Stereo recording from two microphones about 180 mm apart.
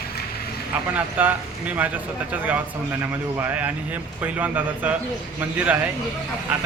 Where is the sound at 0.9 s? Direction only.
10° right (ahead or behind).